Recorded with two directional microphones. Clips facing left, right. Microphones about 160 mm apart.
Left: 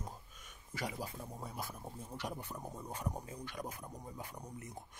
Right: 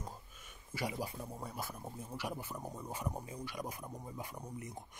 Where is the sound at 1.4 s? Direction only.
Centre (ahead or behind).